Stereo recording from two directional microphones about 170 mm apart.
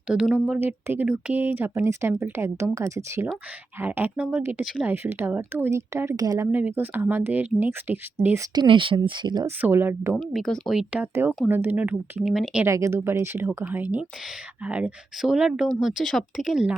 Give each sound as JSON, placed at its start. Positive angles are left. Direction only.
{"t": 0.1, "sound": "speech", "side_deg": -5}
{"t": 8.5, "sound": "speech", "side_deg": -30}
{"t": 9.6, "sound": "speech", "side_deg": -10}
{"t": 10.2, "sound": "speech", "side_deg": 0}
{"t": 12.6, "sound": "speech", "side_deg": -15}